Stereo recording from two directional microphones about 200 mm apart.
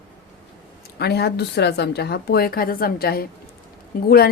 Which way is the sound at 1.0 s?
55° left (ahead or behind).